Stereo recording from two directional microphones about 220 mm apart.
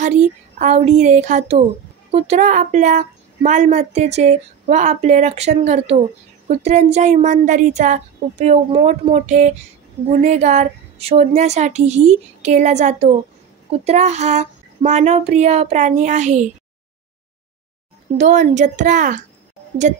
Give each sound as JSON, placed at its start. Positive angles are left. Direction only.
{"t": 0.0, "sound": "a woman's voice", "side_deg": -30}
{"t": 18.1, "sound": "a woman's voice", "side_deg": -35}